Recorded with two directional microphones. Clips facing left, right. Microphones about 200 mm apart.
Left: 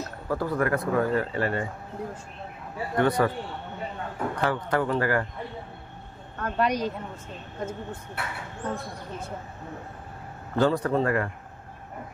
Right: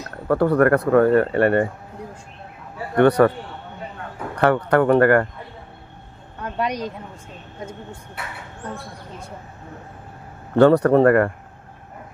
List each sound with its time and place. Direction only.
0.3 s speech: 65° right (ahead or behind)
3.0 s speech: 65° right (ahead or behind)
4.4 s speech: 65° right (ahead or behind)
6.4 s speech: 10° right (ahead or behind)
10.6 s speech: 65° right (ahead or behind)